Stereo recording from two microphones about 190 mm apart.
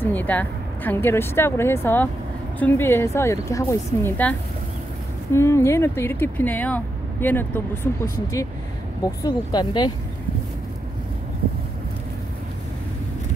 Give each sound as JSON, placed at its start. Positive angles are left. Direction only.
{"t": 0.0, "sound": "speech", "side_deg": 10}